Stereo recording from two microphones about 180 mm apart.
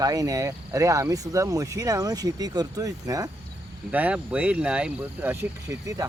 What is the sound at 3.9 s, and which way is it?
Speech, 10° right (ahead or behind).